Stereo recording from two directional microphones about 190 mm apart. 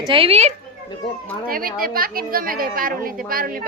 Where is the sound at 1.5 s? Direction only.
50° right (ahead or behind).